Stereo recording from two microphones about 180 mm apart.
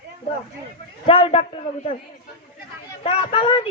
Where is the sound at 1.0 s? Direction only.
30° left (ahead or behind).